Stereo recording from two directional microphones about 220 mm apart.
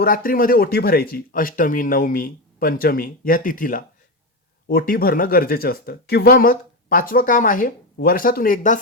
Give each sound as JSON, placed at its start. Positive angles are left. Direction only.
{"t": 0.0, "sound": "speech", "side_deg": 40}